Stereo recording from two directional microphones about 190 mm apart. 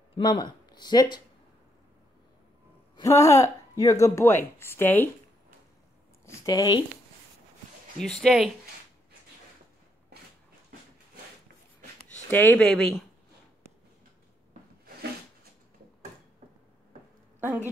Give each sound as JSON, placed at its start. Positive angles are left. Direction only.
{"t": 0.1, "sound": "speech", "side_deg": 20}
{"t": 3.0, "sound": "a woman's voice", "side_deg": 15}
{"t": 6.2, "sound": "speech", "side_deg": 20}
{"t": 8.0, "sound": "speech", "side_deg": 0}
{"t": 12.3, "sound": "a woman's voice", "side_deg": 10}